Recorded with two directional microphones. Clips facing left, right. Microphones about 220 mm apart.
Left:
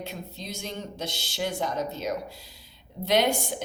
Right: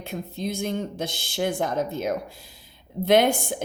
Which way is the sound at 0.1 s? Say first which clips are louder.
Right 8 dB; 55° right (ahead or behind).